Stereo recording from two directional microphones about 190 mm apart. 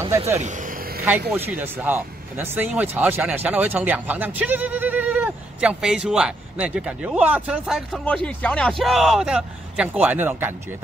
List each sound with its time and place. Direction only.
0.4 s vehicle: 40° right (ahead or behind)
1.3 s speech: 10° right (ahead or behind)